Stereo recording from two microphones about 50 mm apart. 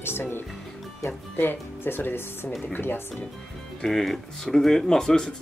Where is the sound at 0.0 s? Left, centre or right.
Left.